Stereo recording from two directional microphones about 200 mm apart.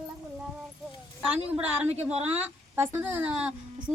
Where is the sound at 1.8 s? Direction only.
10° right (ahead or behind).